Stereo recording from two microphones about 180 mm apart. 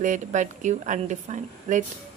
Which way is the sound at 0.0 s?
45° right (ahead or behind).